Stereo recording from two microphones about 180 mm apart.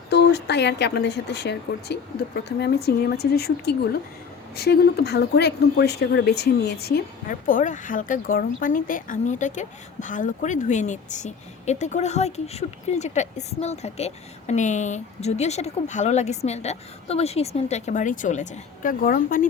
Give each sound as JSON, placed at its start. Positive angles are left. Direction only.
{"t": 0.1, "sound": "speech", "side_deg": 65}